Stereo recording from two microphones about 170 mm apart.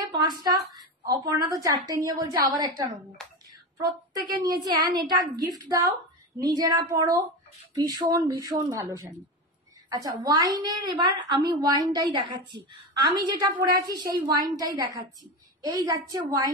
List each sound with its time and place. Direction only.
0.2 s a woman's voice: 25° right (ahead or behind)
4.4 s a woman's voice: 20° right (ahead or behind)